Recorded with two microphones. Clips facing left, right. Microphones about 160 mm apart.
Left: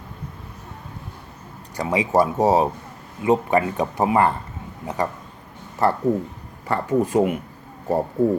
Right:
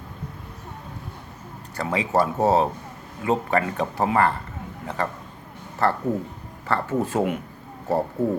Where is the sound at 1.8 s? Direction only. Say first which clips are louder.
Left 3 dB; 15° left (ahead or behind).